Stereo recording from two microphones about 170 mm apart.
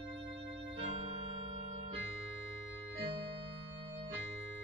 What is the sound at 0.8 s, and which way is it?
Organ, 35° right (ahead or behind).